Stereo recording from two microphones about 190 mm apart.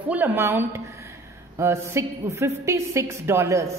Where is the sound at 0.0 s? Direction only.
10° right (ahead or behind).